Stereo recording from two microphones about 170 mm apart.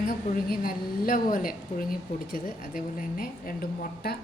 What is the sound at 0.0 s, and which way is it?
A woman's voice, 60° left (ahead or behind).